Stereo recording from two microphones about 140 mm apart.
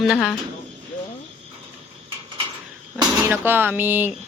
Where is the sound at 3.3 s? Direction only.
15° right (ahead or behind).